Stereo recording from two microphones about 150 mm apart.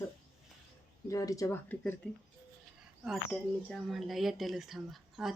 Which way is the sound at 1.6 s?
10° left (ahead or behind).